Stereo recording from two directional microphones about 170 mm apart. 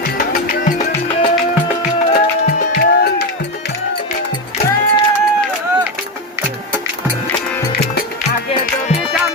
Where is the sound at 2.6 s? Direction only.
60° left (ahead or behind).